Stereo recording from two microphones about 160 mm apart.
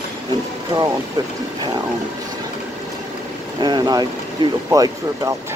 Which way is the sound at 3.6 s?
25° right (ahead or behind).